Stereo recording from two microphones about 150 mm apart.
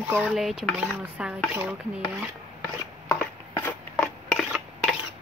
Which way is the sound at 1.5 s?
10° right (ahead or behind).